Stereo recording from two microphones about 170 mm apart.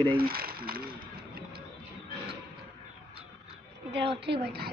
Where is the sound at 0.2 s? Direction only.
60° right (ahead or behind).